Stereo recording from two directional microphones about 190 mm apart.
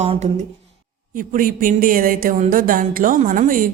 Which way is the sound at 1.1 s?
45° right (ahead or behind).